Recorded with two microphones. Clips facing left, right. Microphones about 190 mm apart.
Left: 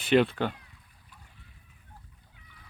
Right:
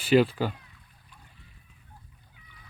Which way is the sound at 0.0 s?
5° right (ahead or behind).